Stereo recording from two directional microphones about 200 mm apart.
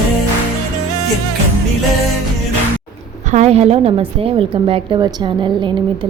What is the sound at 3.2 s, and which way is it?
A woman's voice, 35° right (ahead or behind).